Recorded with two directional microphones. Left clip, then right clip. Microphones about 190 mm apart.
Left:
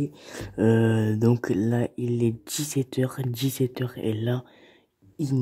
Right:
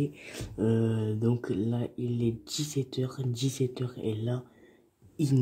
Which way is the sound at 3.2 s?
25° left (ahead or behind).